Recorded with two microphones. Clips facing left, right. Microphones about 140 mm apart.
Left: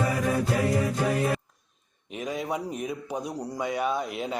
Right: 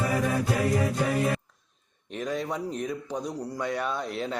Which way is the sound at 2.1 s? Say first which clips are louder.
Even; 10° left (ahead or behind).